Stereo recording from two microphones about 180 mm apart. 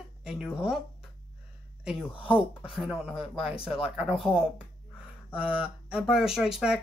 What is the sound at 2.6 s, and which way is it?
Speech, centre (ahead or behind).